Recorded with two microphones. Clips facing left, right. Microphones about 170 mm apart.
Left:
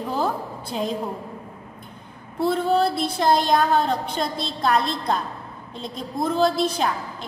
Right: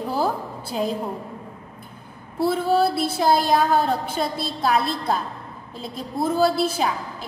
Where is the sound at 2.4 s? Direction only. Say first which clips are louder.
Right 1 dB; 5° right (ahead or behind).